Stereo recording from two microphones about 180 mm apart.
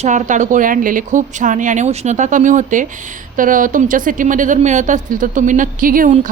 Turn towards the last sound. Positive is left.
turn(degrees=-50)  # may be behind; listen again after turning